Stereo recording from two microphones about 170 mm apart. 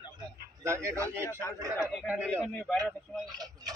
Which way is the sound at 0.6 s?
15° right (ahead or behind).